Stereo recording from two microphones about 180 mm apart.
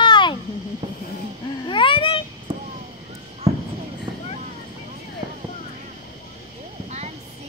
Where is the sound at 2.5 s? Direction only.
25° right (ahead or behind).